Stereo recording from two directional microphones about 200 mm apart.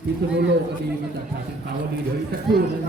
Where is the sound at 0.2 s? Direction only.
55° right (ahead or behind).